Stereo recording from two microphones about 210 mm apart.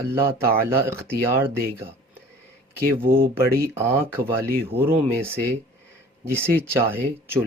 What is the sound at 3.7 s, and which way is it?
Speech, 10° right (ahead or behind).